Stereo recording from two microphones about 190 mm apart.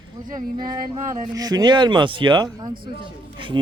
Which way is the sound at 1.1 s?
20° right (ahead or behind).